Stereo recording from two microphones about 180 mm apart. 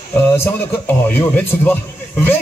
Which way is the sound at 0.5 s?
10° left (ahead or behind).